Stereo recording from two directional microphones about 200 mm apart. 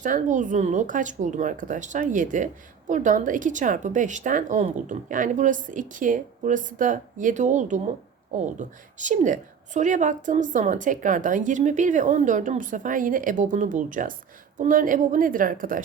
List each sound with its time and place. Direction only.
0.0 s a woman's voice: 40° right (ahead or behind)